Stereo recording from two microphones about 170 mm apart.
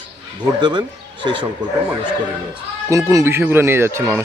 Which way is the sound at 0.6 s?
25° right (ahead or behind).